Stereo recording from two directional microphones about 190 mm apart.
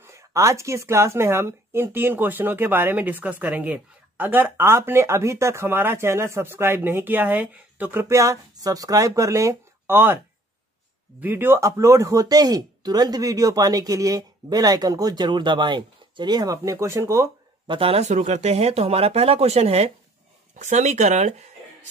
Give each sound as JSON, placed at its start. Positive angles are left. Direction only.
{"t": 0.0, "sound": "a woman's voice", "side_deg": -15}
{"t": 17.7, "sound": "speech", "side_deg": -30}